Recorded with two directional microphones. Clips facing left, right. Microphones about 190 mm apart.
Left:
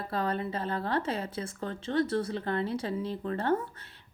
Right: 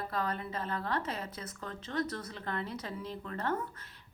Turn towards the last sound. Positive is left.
turn(degrees=30)  # may be behind; listen again after turning